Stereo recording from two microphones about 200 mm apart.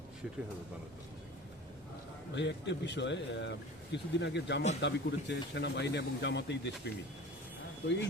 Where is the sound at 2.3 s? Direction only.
60° left (ahead or behind).